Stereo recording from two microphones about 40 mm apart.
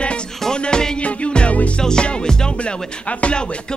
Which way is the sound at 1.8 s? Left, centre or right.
Centre.